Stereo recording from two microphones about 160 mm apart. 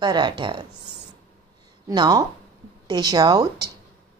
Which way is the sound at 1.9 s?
25° right (ahead or behind).